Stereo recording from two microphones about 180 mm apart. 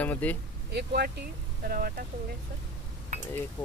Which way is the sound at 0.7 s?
65° right (ahead or behind).